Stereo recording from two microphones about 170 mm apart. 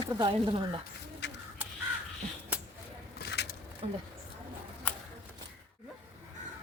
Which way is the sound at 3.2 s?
75° left (ahead or behind).